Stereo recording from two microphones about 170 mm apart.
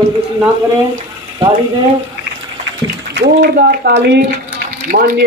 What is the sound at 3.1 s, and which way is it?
Speech, 90° right.